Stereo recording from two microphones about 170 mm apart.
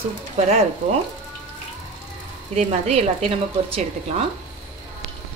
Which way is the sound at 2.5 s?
40° right (ahead or behind).